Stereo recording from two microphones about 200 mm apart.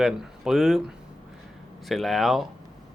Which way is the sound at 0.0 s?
Centre (ahead or behind).